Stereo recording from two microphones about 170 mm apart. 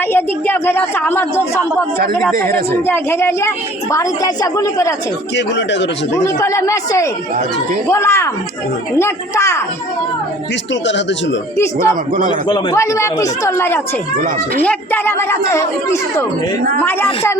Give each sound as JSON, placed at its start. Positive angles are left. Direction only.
{"t": 0.1, "sound": "speech", "side_deg": 10}
{"t": 2.8, "sound": "speech", "side_deg": 15}
{"t": 5.5, "sound": "speech", "side_deg": 90}
{"t": 6.1, "sound": "speech", "side_deg": 15}
{"t": 10.8, "sound": "speech", "side_deg": 90}
{"t": 11.5, "sound": "speech", "side_deg": 15}
{"t": 12.3, "sound": "speech", "side_deg": 25}